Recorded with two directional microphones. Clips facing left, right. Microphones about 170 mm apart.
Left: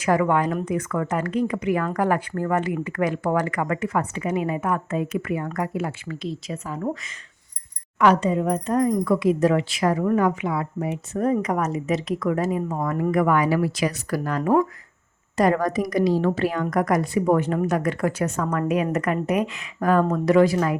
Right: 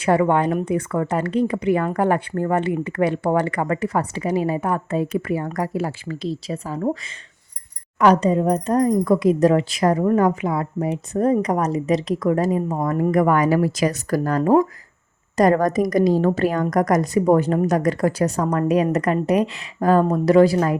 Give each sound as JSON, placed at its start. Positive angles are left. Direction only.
{"t": 0.0, "sound": "a woman's voice", "side_deg": -30}